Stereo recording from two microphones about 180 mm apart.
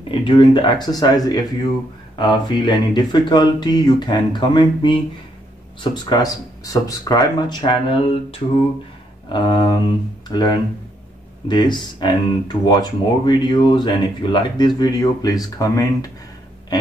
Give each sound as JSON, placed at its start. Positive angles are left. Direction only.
{"t": 0.2, "sound": "speech", "side_deg": 25}
{"t": 6.0, "sound": "speech", "side_deg": 20}